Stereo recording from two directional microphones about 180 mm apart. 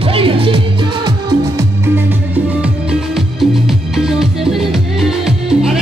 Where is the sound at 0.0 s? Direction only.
30° right (ahead or behind).